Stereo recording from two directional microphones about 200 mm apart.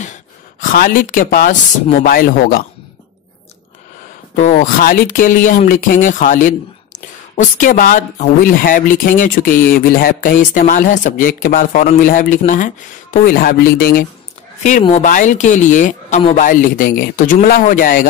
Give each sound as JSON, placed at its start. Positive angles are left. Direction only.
{"t": 0.6, "sound": "speech", "side_deg": 45}
{"t": 4.4, "sound": "speech", "side_deg": 40}
{"t": 14.6, "sound": "speech", "side_deg": 35}